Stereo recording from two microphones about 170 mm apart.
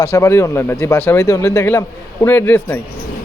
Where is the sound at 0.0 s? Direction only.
15° left (ahead or behind).